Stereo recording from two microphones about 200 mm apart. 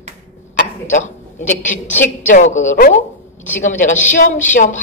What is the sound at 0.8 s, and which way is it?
A man's voice, 40° left (ahead or behind).